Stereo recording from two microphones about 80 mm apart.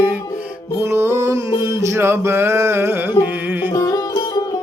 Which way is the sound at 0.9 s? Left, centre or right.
Right.